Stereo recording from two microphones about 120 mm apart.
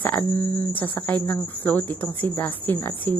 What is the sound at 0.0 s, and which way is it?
Speech, 15° left (ahead or behind).